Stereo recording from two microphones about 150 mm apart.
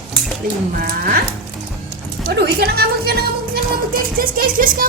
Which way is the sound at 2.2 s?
90° right.